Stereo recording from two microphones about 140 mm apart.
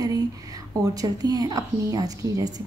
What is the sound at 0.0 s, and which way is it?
A woman's voice, 25° right (ahead or behind).